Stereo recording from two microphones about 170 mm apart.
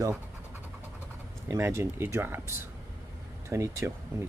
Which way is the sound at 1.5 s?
15° right (ahead or behind).